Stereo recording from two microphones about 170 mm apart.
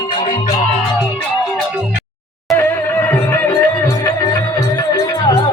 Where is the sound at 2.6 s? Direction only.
15° left (ahead or behind).